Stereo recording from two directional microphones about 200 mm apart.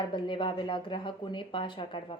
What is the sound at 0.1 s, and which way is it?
A woman's voice, 25° left (ahead or behind).